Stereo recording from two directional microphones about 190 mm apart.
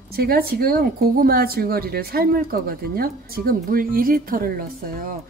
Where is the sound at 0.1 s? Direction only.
55° right (ahead or behind).